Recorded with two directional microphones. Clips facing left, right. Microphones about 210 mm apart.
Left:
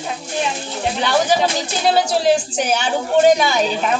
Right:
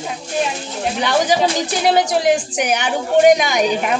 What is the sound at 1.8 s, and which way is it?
A woman's voice, 15° right (ahead or behind).